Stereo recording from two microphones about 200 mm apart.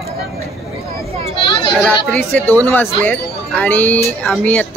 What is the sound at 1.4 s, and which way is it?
Children playing, 25° left (ahead or behind).